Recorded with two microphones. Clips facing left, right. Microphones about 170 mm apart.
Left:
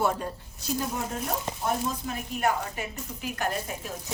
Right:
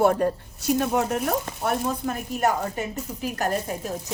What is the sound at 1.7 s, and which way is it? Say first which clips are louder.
A woman's voice: right 4 dB; 60° right (ahead or behind).